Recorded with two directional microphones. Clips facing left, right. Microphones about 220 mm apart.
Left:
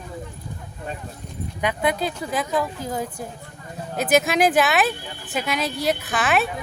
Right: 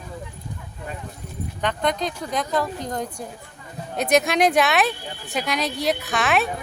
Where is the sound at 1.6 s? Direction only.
5° left (ahead or behind).